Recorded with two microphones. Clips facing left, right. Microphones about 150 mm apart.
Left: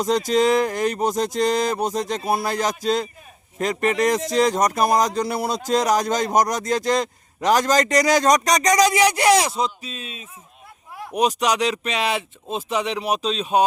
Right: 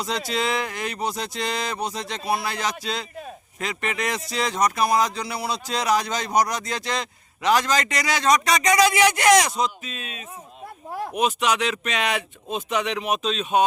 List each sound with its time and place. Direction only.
0.0 s speech: 45° left (ahead or behind)